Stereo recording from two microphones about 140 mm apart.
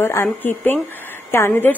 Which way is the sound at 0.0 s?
15° left (ahead or behind).